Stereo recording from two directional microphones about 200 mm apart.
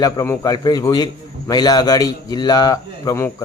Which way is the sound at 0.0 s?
15° left (ahead or behind).